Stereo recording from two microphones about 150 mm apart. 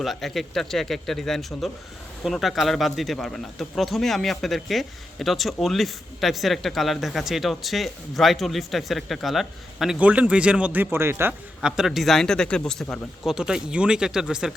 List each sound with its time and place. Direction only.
0.0 s speech: centre (ahead or behind)